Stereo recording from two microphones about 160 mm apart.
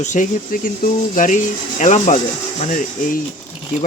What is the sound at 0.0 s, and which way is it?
A man's voice, 50° left (ahead or behind).